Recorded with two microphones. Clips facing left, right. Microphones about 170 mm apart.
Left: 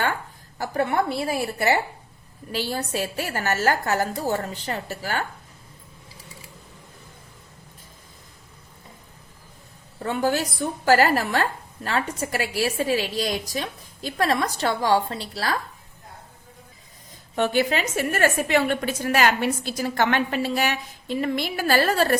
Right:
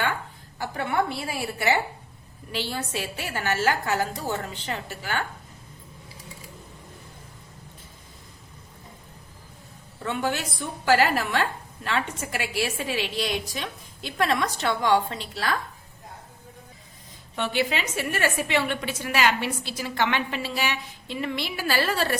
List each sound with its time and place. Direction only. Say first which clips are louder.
0.6 s a woman's voice: left 3 dB; 40° left (ahead or behind)
10.0 s a woman's voice: left 4 dB; 40° left (ahead or behind)
17.3 s a woman's voice: left 4 dB; 45° left (ahead or behind)